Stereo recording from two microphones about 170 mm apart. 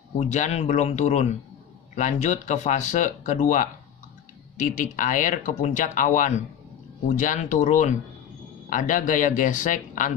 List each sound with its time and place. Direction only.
0.2 s speech: 45° left (ahead or behind)